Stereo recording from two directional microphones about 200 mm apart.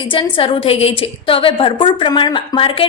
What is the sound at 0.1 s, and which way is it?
A woman's voice, 25° left (ahead or behind).